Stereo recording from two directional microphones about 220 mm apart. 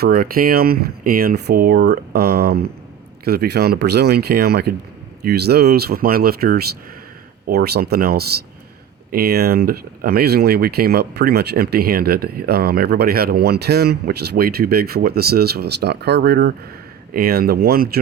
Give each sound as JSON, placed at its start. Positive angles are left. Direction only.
{"t": 0.0, "sound": "speech", "side_deg": -40}